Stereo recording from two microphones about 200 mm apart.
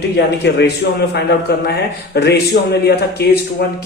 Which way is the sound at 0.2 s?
55° left (ahead or behind).